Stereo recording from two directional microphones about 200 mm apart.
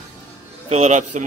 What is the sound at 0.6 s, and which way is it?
Speech, 35° right (ahead or behind).